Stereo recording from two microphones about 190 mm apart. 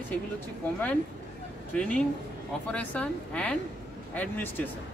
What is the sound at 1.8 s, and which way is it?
A man's voice, 5° left (ahead or behind).